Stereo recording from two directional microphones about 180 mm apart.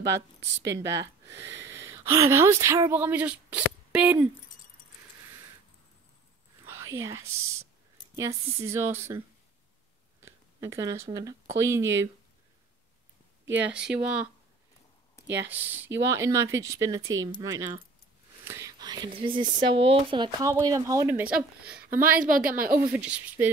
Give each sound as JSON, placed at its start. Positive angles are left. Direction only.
{"t": 0.1, "sound": "speech", "side_deg": -70}
{"t": 0.7, "sound": "speech", "side_deg": -15}
{"t": 1.2, "sound": "wheeze", "side_deg": -15}
{"t": 1.6, "sound": "speech", "side_deg": -15}
{"t": 6.6, "sound": "whispering", "side_deg": -15}
{"t": 8.2, "sound": "speech", "side_deg": -15}
{"t": 10.2, "sound": "a sound", "side_deg": -15}
{"t": 11.1, "sound": "speech", "side_deg": -20}
{"t": 13.6, "sound": "speech", "side_deg": -5}
{"t": 18.4, "sound": "whispering", "side_deg": -15}
{"t": 19.7, "sound": "speech", "side_deg": -30}
{"t": 21.6, "sound": "a woman's voice", "side_deg": -5}
{"t": 22.2, "sound": "a woman's voice", "side_deg": -50}
{"t": 22.8, "sound": "speech", "side_deg": -5}